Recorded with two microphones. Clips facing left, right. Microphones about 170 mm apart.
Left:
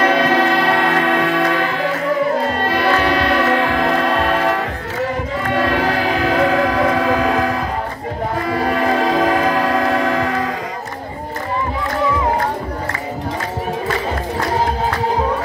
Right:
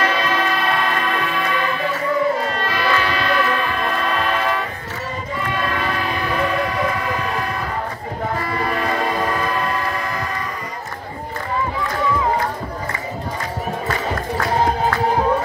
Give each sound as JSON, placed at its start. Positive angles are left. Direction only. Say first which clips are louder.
{"t": 0.0, "sound": "music", "louder": "left 6 dB", "side_deg": 60}
{"t": 2.6, "sound": "music", "louder": "left 4 dB", "side_deg": 55}
{"t": 8.5, "sound": "a sound", "louder": "left 8 dB", "side_deg": 60}